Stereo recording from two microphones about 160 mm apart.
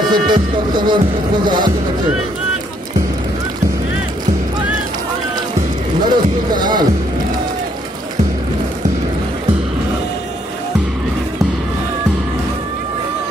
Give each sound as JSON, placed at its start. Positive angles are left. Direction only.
{"t": 0.1, "sound": "music", "side_deg": -30}
{"t": 5.9, "sound": "speech", "side_deg": -25}